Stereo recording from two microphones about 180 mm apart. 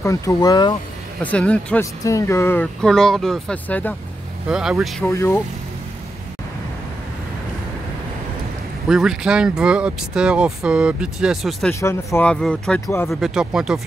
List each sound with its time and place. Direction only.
0.0 s speech: 15° left (ahead or behind)
1.2 s speech: 5° left (ahead or behind)
4.5 s speech: 5° right (ahead or behind)
5.0 s speech: 15° left (ahead or behind)
8.8 s speech: centre (ahead or behind)
11.8 s speech: 15° left (ahead or behind)
12.8 s speech: 15° left (ahead or behind)
13.1 s speech: centre (ahead or behind)